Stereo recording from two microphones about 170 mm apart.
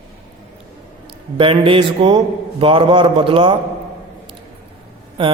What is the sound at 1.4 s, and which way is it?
A man's voice, 30° right (ahead or behind).